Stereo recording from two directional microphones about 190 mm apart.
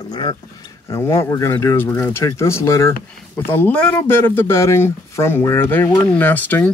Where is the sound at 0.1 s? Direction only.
25° left (ahead or behind).